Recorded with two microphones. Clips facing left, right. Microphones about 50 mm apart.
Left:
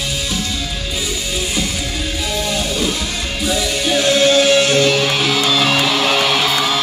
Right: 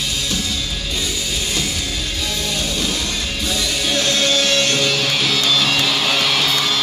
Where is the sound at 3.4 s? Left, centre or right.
Centre.